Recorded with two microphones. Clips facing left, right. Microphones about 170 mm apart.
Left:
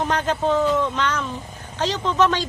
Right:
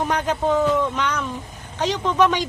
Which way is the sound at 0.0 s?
10° right (ahead or behind).